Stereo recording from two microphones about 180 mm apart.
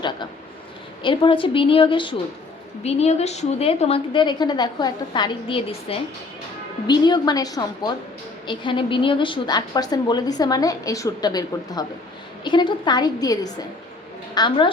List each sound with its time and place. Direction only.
1.0 s a woman's voice: 25° left (ahead or behind)